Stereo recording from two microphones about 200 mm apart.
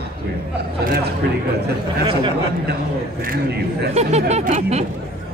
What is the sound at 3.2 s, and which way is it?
Speech, 55° right (ahead or behind).